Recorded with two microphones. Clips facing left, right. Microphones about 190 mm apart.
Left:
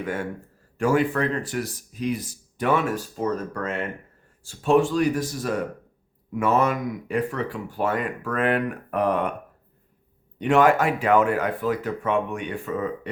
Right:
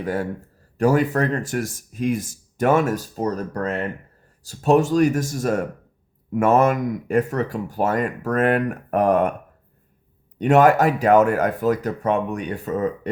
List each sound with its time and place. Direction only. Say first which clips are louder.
0.0 s a man's voice: right 4 dB; 35° right (ahead or behind)
10.3 s speech: right 3 dB; 40° right (ahead or behind)